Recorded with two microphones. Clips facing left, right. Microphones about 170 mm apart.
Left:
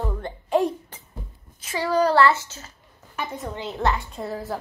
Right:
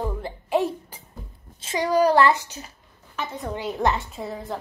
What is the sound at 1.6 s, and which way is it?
A child's voice, 20° right (ahead or behind).